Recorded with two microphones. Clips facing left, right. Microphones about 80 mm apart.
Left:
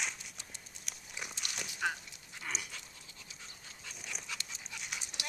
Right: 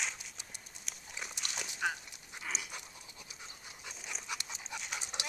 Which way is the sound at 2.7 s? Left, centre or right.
Centre.